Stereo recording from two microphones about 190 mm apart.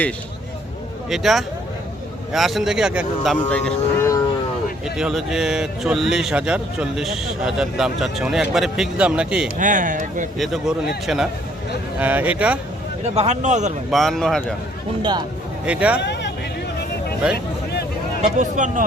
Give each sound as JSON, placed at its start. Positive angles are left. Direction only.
{"t": 1.1, "sound": "speech", "side_deg": 0}
{"t": 3.5, "sound": "a sound", "side_deg": 10}
{"t": 4.9, "sound": "speech", "side_deg": 0}
{"t": 9.6, "sound": "speech", "side_deg": -40}
{"t": 10.3, "sound": "speech", "side_deg": 0}
{"t": 13.1, "sound": "speech", "side_deg": -35}
{"t": 13.9, "sound": "speech", "side_deg": 0}
{"t": 15.6, "sound": "speech", "side_deg": -5}
{"t": 16.0, "sound": "hubbub", "side_deg": 65}
{"t": 17.3, "sound": "a sound", "side_deg": 60}
{"t": 18.2, "sound": "speech", "side_deg": -40}